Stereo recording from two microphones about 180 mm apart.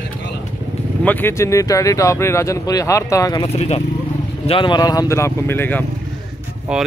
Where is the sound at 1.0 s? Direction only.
10° left (ahead or behind).